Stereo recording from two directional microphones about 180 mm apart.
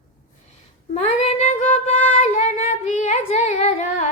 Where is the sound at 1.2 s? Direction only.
40° left (ahead or behind).